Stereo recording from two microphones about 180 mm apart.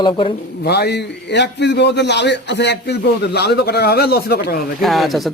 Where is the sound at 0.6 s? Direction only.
65° left (ahead or behind).